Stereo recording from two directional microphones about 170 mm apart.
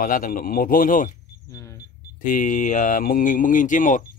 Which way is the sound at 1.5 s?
15° left (ahead or behind).